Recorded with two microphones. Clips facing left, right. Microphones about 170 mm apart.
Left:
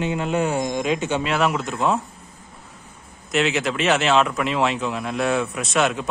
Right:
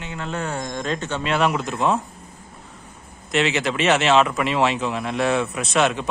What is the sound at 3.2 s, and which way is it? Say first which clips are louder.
Speech: even; centre (ahead or behind).